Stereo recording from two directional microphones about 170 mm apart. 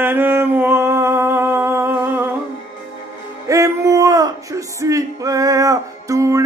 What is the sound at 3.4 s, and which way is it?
Speech, 20° right (ahead or behind).